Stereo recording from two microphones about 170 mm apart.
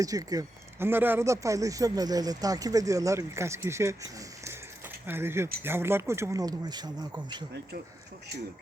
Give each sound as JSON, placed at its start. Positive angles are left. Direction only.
{"t": 0.0, "sound": "speech", "side_deg": -20}